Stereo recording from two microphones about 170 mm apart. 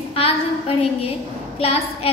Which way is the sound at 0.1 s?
35° left (ahead or behind).